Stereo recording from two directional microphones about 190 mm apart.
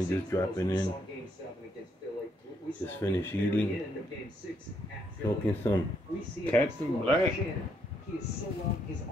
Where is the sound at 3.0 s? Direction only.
15° left (ahead or behind).